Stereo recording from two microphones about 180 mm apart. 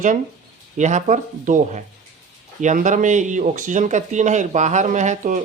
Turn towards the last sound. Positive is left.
turn(degrees=-45)  # may be behind; listen again after turning